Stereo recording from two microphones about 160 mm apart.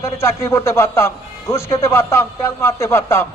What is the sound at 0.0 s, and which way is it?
A man's voice, 15° left (ahead or behind).